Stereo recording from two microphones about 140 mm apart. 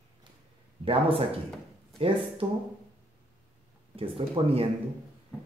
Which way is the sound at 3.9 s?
40° right (ahead or behind).